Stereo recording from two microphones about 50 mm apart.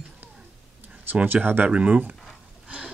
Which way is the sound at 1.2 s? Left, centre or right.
Right.